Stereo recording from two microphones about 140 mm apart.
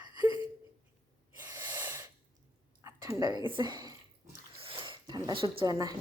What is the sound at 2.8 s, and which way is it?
A woman's voice, 25° right (ahead or behind).